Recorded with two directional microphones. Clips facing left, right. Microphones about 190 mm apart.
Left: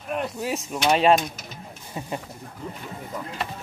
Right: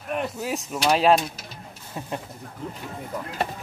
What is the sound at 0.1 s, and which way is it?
Speech, centre (ahead or behind).